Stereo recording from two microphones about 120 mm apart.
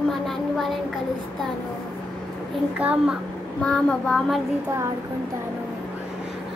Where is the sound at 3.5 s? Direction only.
10° left (ahead or behind).